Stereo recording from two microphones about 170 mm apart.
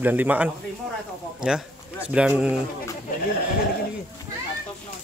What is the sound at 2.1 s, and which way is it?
Speech, 5° right (ahead or behind).